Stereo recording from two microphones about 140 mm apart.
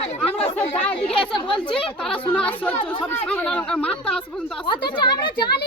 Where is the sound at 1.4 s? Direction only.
35° left (ahead or behind).